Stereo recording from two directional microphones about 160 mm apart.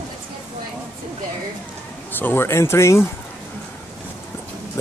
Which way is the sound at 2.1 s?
15° left (ahead or behind).